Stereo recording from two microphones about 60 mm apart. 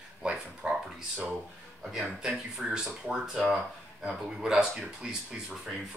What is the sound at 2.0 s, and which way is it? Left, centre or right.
Speech, centre.